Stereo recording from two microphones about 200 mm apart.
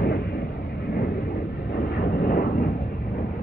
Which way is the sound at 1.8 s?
55° left (ahead or behind).